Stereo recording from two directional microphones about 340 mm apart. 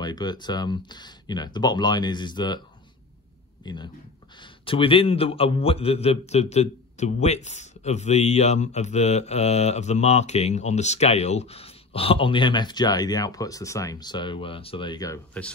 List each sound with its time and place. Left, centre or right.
0.0 s a man's voice: centre
3.6 s a man's voice: centre